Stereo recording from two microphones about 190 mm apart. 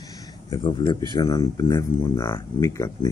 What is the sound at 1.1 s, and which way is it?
Speech, 20° left (ahead or behind).